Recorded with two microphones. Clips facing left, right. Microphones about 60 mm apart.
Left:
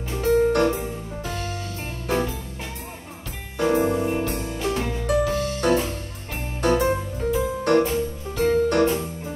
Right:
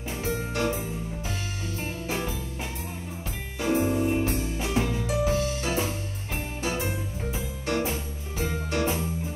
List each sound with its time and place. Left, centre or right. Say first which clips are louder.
0.2 s keyboard: left 11 dB; left
3.5 s music: left 4 dB; left